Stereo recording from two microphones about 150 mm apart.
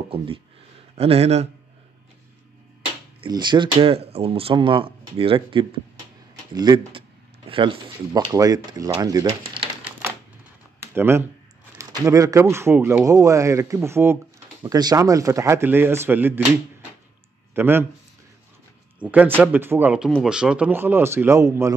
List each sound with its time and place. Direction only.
0.9 s speech: 40° right (ahead or behind)
3.3 s speech: 30° right (ahead or behind)
8.1 s speech: 25° right (ahead or behind)
10.8 s speech: 15° right (ahead or behind)
17.6 s speech: 15° right (ahead or behind)
18.9 s speech: 10° right (ahead or behind)